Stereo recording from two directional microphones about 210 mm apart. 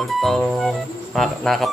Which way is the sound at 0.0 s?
Centre (ahead or behind).